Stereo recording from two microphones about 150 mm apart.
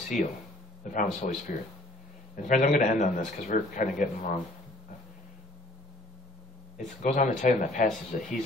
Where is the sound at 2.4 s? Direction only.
55° left (ahead or behind).